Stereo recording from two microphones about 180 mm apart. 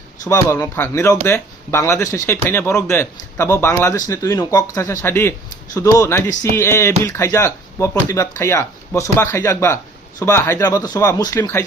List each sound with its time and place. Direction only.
0.3 s speech: 15° left (ahead or behind)